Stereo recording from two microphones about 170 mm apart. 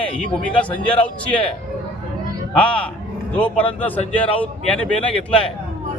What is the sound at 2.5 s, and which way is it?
Speech, 5° left (ahead or behind).